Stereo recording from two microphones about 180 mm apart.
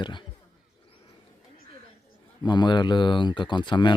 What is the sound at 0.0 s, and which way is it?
Roaring cats, 25° left (ahead or behind).